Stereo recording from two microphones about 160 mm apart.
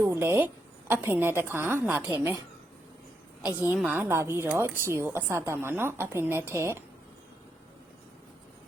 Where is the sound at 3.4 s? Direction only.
10° right (ahead or behind).